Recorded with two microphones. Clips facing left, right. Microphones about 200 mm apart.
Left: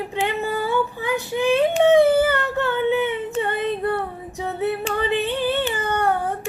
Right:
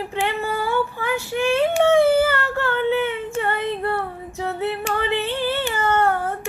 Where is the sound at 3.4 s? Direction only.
20° left (ahead or behind).